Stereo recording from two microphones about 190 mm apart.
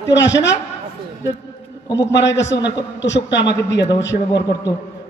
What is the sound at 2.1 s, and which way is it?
A man's voice, 70° left (ahead or behind).